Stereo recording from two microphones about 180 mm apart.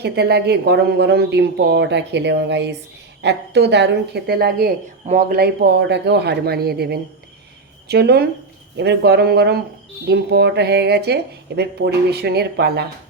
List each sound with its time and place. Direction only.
0.0 s speech: 65° right (ahead or behind)